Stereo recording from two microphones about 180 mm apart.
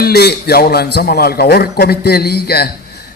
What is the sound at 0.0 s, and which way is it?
A man's voice, 65° left (ahead or behind).